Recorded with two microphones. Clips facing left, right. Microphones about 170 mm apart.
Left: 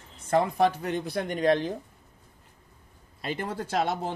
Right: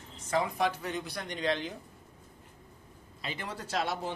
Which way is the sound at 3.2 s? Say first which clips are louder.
Left 7 dB; 50° left (ahead or behind).